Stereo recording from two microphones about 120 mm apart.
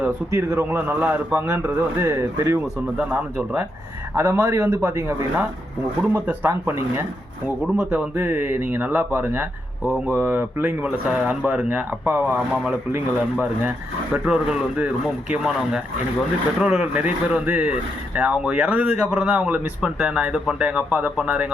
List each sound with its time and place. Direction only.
0.3 s a man's voice: 25° right (ahead or behind)
6.0 s a man's voice: 15° right (ahead or behind)
7.6 s speech: 5° right (ahead or behind)
8.1 s speech: 20° right (ahead or behind)